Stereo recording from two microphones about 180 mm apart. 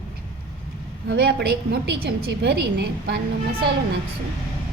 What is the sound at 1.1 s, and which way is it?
A woman's voice, 65° right (ahead or behind).